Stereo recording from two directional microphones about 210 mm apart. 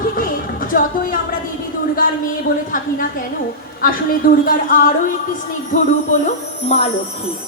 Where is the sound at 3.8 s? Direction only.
40° left (ahead or behind).